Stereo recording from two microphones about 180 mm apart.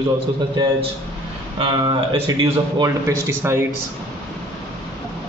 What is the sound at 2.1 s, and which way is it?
A man's voice, 20° right (ahead or behind).